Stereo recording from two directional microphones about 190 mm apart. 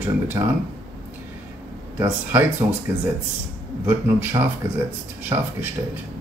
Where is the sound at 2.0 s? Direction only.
10° right (ahead or behind).